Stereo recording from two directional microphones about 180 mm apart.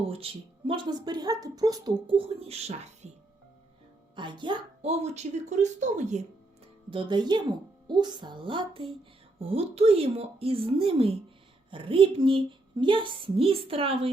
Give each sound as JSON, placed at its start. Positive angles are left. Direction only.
{"t": 0.0, "sound": "a woman's voice", "side_deg": -30}
{"t": 4.1, "sound": "a woman's voice", "side_deg": -25}
{"t": 6.9, "sound": "a woman's voice", "side_deg": -25}